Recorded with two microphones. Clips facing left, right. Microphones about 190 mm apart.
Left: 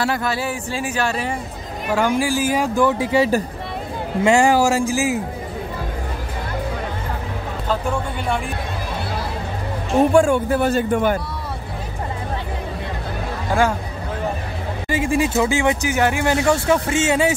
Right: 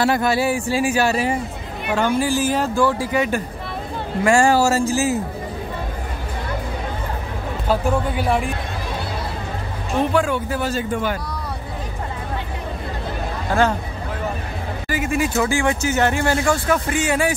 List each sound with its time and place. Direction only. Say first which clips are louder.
0.0 s speech: right 4 dB; 15° right (ahead or behind)
2.0 s speech: even; 10° left (ahead or behind); by 3.4 s 35° left (ahead or behind)
4.2 s speech: left 1 dB; 20° left (ahead or behind)
7.6 s speech: right 3 dB; 10° right (ahead or behind)
9.9 s speech: left 5 dB; 45° left (ahead or behind)
14.9 s speech: left 2 dB; 25° left (ahead or behind); by 16.3 s 10° left (ahead or behind)
16.4 s speech: left 2 dB; 25° left (ahead or behind)